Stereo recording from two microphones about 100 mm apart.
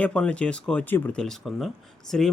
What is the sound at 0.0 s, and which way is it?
Speech, 10° left (ahead or behind).